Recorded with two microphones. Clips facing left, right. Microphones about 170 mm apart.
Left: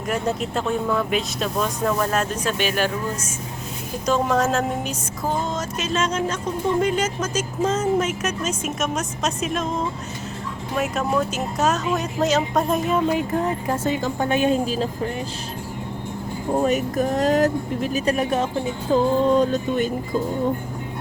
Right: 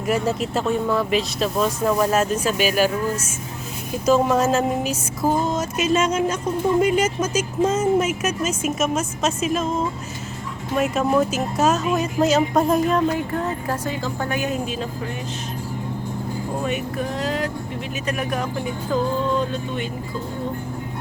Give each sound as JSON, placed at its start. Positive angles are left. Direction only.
{"t": 0.1, "sound": "speech", "side_deg": -5}
{"t": 10.8, "sound": "speech", "side_deg": 0}
{"t": 13.1, "sound": "a woman's voice", "side_deg": 20}
{"t": 16.6, "sound": "speech", "side_deg": 40}
{"t": 19.3, "sound": "music", "side_deg": 40}